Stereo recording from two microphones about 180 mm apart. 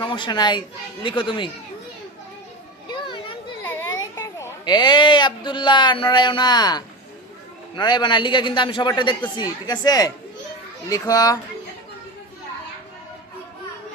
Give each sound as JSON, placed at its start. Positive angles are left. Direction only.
{"t": 0.0, "sound": "a child's voice", "side_deg": 25}
{"t": 3.1, "sound": "children playing", "side_deg": 30}
{"t": 4.4, "sound": "speech", "side_deg": 20}